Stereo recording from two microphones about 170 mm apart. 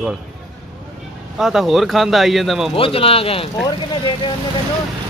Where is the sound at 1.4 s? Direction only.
Centre (ahead or behind).